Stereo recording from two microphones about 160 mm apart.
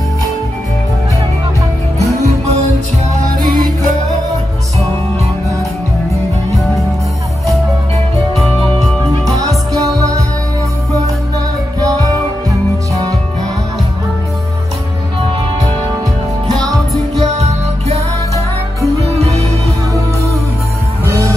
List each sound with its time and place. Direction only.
2.0 s music: 45° right (ahead or behind)
3.4 s music: 60° right (ahead or behind)
8.4 s music: centre (ahead or behind)
9.4 s music: 20° right (ahead or behind)
11.8 s music: 20° right (ahead or behind)
17.4 s music: 40° right (ahead or behind)
19.1 s music: 40° right (ahead or behind)
21.0 s music: 15° right (ahead or behind)